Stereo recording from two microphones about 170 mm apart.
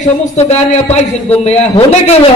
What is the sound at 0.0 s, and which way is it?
A man's voice, 40° left (ahead or behind).